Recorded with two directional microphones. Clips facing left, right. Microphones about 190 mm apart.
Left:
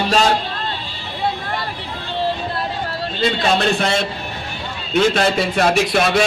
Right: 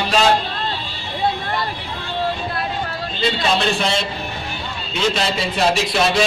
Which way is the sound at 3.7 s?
50° left (ahead or behind).